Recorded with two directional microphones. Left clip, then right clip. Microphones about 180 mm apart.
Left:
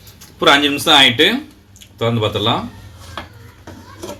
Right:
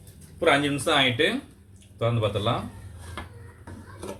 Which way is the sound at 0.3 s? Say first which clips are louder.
Left 10 dB; 60° left (ahead or behind).